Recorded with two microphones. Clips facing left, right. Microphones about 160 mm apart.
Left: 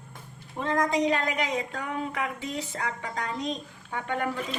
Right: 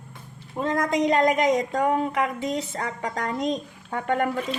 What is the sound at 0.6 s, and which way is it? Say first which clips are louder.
A woman's voice: right 2 dB; 40° right (ahead or behind).